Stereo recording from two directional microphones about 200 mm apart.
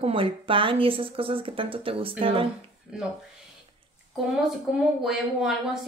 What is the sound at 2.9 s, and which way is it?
Speech, 5° right (ahead or behind).